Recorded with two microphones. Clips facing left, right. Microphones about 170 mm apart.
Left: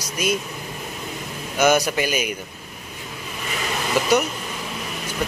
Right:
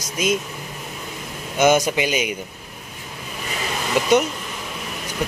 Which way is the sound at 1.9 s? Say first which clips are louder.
Right 1 dB; 20° right (ahead or behind).